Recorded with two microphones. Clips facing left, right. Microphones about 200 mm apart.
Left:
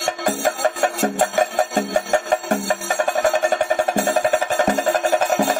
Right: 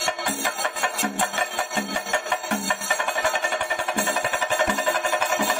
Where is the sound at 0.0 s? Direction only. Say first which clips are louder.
Left 7 dB; 45° left (ahead or behind).